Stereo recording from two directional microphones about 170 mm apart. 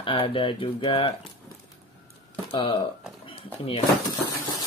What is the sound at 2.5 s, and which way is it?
Speech, 30° left (ahead or behind).